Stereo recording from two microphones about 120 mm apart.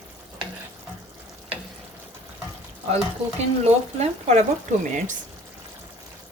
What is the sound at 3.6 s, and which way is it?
Speech, 65° right (ahead or behind).